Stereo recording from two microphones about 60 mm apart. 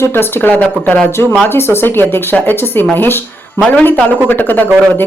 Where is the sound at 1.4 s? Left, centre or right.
Left.